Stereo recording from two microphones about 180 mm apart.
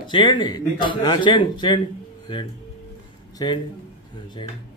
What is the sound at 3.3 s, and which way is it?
Speech, 25° left (ahead or behind).